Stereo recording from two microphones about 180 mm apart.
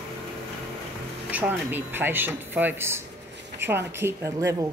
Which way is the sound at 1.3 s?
10° right (ahead or behind).